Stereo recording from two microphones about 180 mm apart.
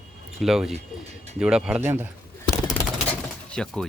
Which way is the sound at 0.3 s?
Centre (ahead or behind).